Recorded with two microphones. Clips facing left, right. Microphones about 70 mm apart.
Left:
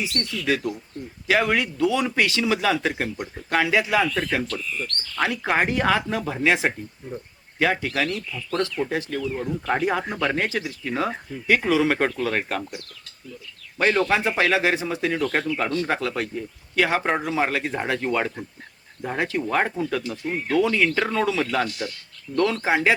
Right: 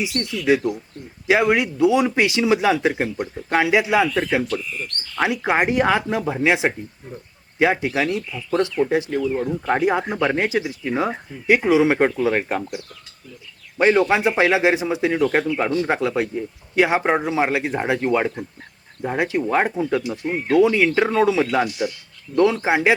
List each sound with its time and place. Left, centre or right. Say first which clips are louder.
0.0 s speech: right 4 dB; centre
13.7 s speech: right 4 dB; centre